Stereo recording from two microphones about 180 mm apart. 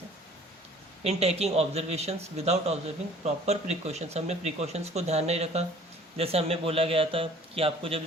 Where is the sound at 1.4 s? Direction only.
35° right (ahead or behind).